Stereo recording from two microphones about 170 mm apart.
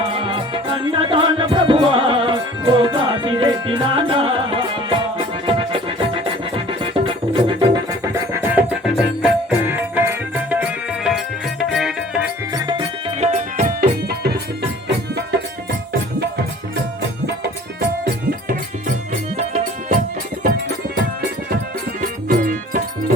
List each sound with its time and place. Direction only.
0.0 s music: 30° right (ahead or behind)
8.1 s music: 15° right (ahead or behind)
12.5 s music: 25° right (ahead or behind); by 13.9 s 45° right (ahead or behind)
14.8 s music: 75° right (ahead or behind)
22.3 s music: 55° right (ahead or behind)